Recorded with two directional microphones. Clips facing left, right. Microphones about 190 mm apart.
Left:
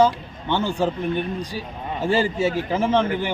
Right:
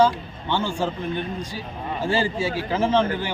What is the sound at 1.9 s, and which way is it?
Speech, 15° left (ahead or behind).